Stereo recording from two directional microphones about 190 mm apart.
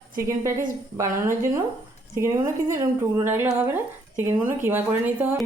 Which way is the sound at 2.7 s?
15° right (ahead or behind).